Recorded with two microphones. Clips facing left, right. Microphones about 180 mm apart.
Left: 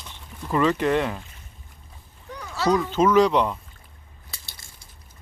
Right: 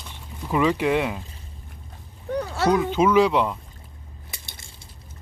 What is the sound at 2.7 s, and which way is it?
Speech, 10° right (ahead or behind).